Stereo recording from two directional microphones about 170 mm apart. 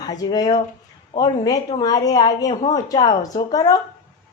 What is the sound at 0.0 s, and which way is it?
Speech, 25° left (ahead or behind).